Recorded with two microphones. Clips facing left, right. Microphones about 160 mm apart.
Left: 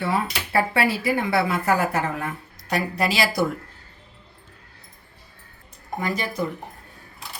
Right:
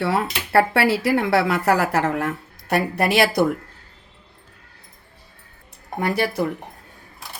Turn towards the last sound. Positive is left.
turn(degrees=-65)  # may be behind; listen again after turning